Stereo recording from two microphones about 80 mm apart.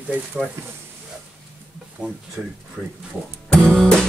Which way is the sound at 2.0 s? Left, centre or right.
Centre.